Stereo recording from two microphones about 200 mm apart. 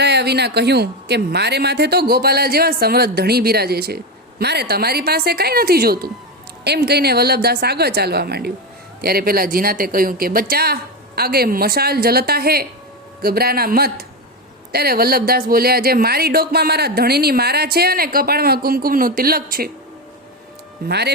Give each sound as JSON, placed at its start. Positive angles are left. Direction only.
{"t": 0.0, "sound": "speech", "side_deg": -55}
{"t": 20.8, "sound": "speech", "side_deg": -55}